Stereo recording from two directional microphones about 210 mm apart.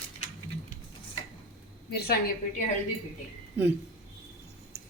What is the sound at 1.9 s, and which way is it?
Speech, 50° left (ahead or behind).